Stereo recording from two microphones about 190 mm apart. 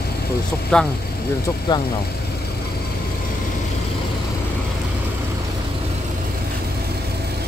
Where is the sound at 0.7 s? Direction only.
5° left (ahead or behind).